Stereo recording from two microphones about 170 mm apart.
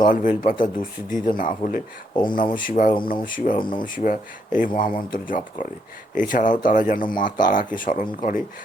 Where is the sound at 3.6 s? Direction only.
30° left (ahead or behind).